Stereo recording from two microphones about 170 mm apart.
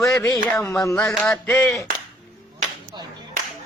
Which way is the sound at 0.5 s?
Centre (ahead or behind).